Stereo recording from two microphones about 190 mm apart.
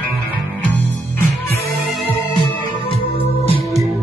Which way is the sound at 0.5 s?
10° left (ahead or behind).